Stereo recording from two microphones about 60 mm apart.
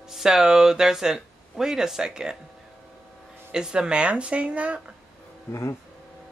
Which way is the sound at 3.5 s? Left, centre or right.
Centre.